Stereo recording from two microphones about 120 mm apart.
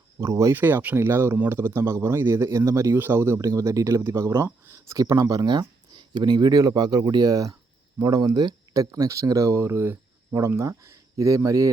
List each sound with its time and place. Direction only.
0.2 s speech: 25° right (ahead or behind)
0.5 s speech: 15° right (ahead or behind)